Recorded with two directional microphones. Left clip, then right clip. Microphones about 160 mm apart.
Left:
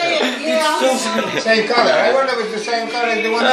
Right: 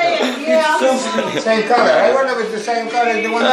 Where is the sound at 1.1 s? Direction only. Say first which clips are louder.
Even; centre (ahead or behind).